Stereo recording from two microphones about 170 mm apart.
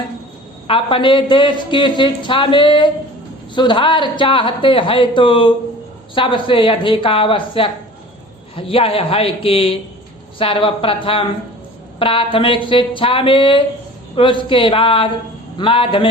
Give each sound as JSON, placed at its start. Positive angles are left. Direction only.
{"t": 0.7, "sound": "a man's voice", "side_deg": 30}